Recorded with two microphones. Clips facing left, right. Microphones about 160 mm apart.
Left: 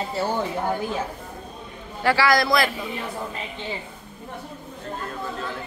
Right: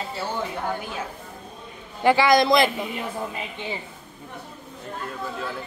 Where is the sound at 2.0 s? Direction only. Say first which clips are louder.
Right 3 dB; 20° right (ahead or behind).